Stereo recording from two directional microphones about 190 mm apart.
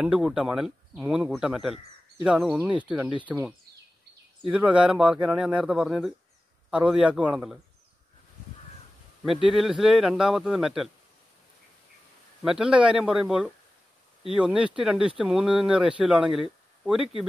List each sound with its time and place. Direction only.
0.0 s speech: 5° right (ahead or behind)
9.5 s speech: centre (ahead or behind)
12.4 s speech: 5° right (ahead or behind)